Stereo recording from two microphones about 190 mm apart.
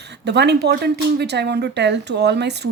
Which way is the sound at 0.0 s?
60° right (ahead or behind).